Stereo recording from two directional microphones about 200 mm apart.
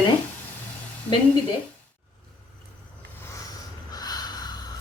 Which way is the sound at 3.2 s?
15° left (ahead or behind).